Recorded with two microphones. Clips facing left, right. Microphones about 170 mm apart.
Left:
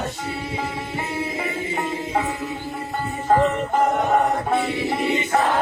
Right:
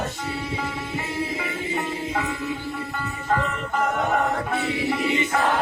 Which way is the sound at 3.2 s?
35° left (ahead or behind).